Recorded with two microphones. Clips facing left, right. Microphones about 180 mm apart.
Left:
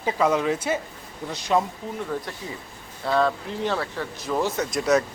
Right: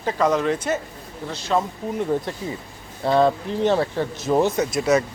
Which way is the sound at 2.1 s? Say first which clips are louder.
Right 6 dB; 25° right (ahead or behind).